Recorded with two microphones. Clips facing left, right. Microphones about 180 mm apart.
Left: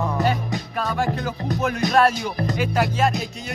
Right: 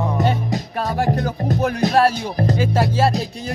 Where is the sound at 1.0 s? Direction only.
40° right (ahead or behind).